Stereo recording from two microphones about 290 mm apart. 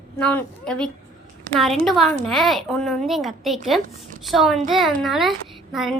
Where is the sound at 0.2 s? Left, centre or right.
Centre.